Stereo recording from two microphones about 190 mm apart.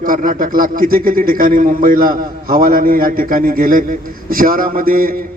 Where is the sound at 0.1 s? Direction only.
45° right (ahead or behind).